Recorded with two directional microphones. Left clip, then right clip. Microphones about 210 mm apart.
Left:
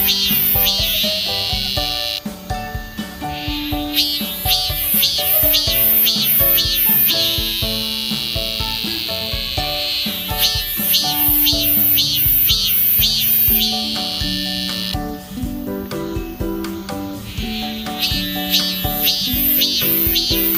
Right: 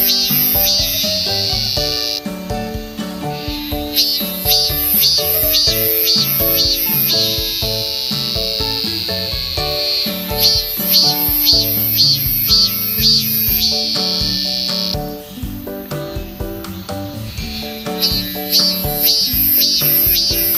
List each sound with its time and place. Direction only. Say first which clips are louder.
0.0 s music: right 1 dB; 30° left (ahead or behind)
3.9 s music: right 3 dB; 30° left (ahead or behind)
18.0 s music: right 1 dB; 30° left (ahead or behind)